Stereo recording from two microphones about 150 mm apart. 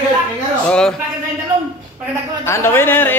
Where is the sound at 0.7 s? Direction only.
5° left (ahead or behind).